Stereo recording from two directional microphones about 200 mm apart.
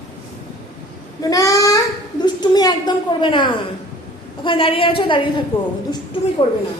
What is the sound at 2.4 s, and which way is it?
A child's voice, 20° left (ahead or behind).